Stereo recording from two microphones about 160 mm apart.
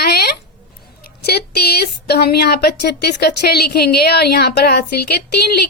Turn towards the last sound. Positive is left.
turn(degrees=85)